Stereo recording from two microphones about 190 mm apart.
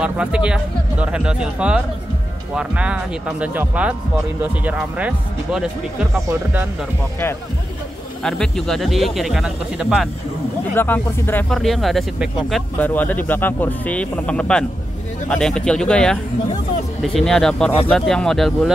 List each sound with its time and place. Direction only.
0.0 s speech: 5° right (ahead or behind)
8.2 s speech: 5° left (ahead or behind)
10.8 s speech: 10° left (ahead or behind)